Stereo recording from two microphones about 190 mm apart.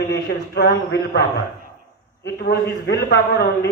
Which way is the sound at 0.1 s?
55° left (ahead or behind).